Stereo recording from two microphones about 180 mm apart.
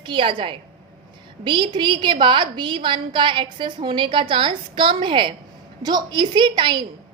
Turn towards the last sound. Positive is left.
turn(degrees=-25)  # may be behind; listen again after turning